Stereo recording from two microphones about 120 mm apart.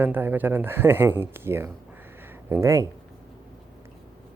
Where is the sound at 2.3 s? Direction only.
20° right (ahead or behind).